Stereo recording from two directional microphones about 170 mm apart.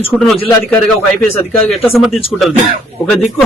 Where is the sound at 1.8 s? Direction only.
Centre (ahead or behind).